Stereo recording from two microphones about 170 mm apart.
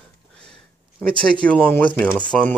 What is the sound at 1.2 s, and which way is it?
Speech, 5° left (ahead or behind).